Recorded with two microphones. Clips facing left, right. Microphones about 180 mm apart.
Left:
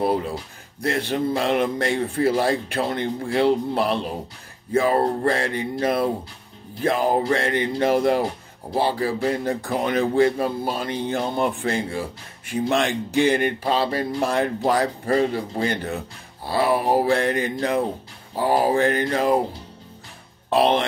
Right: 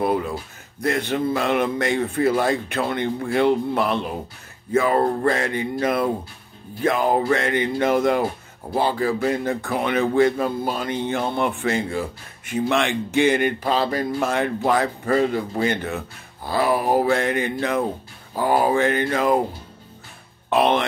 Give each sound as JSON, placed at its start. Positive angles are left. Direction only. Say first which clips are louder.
{"t": 0.0, "sound": "a sound", "louder": "even", "side_deg": 35}
{"t": 0.7, "sound": "speech", "louder": "right 1 dB", "side_deg": 30}
{"t": 20.4, "sound": "speech", "louder": "even", "side_deg": 35}